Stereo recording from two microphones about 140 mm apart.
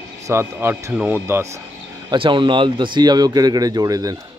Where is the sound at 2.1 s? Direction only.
35° right (ahead or behind).